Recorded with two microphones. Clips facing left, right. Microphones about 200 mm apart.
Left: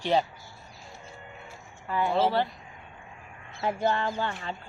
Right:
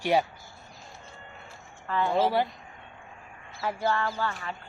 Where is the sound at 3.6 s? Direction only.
20° left (ahead or behind).